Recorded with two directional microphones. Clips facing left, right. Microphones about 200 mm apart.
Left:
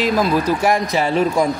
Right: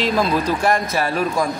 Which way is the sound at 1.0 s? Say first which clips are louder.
Left 4 dB; 20° left (ahead or behind).